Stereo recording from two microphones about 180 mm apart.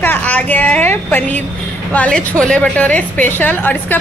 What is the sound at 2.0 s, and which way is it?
A woman's voice, 5° left (ahead or behind).